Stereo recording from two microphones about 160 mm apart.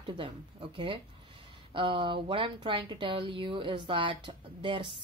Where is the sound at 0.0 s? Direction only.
30° right (ahead or behind).